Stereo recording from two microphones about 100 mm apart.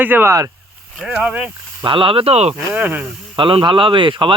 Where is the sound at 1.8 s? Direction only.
60° right (ahead or behind); by 2.5 s 90° right.